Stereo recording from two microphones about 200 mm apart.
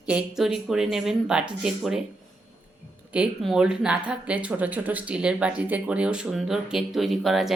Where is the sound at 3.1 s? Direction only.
5° right (ahead or behind).